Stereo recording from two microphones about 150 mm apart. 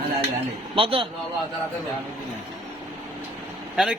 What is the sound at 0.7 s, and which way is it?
Speech, 35° right (ahead or behind).